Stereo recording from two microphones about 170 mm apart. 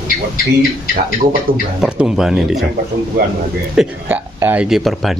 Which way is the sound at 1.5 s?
55° right (ahead or behind).